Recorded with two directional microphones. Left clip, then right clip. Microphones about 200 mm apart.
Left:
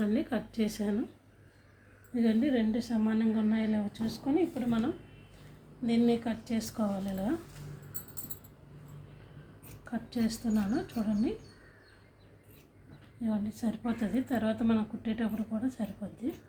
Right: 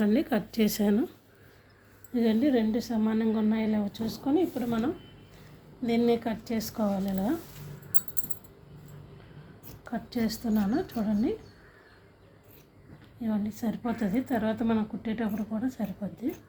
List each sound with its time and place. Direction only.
0.0 s speech: 40° right (ahead or behind)
2.1 s a woman's voice: 35° right (ahead or behind)
5.8 s a woman's voice: 30° right (ahead or behind)
9.9 s a woman's voice: 30° right (ahead or behind)
13.2 s a woman's voice: 25° right (ahead or behind)